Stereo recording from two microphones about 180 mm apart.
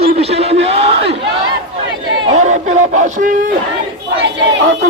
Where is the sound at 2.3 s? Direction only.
40° right (ahead or behind).